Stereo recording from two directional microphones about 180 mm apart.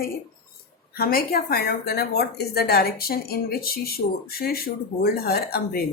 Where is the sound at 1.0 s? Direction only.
55° left (ahead or behind).